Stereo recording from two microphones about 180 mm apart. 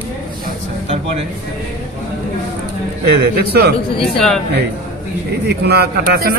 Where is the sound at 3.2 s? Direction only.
65° right (ahead or behind).